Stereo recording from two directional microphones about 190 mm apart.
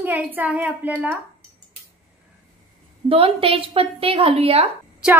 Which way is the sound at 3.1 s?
30° right (ahead or behind).